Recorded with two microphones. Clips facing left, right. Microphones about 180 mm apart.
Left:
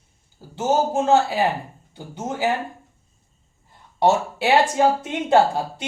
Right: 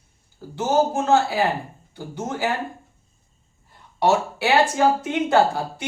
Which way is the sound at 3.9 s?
20° left (ahead or behind).